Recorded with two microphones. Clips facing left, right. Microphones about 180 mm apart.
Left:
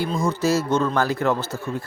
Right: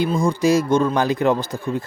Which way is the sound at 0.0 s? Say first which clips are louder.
Right 4 dB; 15° right (ahead or behind).